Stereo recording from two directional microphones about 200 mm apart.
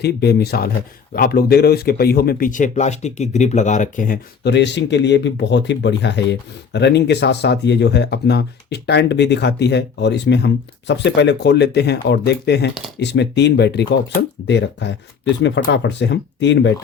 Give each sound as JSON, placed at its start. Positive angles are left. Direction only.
{"t": 0.0, "sound": "speech", "side_deg": 55}